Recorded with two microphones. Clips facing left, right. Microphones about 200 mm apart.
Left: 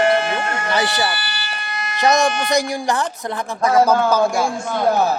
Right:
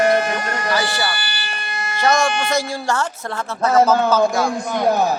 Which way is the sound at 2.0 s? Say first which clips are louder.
Left 1 dB; 20° left (ahead or behind).